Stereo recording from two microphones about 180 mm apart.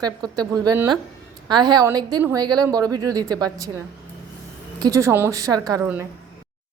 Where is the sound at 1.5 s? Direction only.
25° right (ahead or behind).